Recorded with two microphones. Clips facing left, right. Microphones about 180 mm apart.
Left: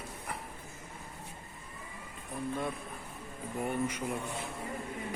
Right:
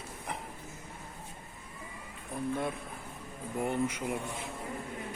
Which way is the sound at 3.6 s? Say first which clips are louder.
Right 2 dB; 20° right (ahead or behind).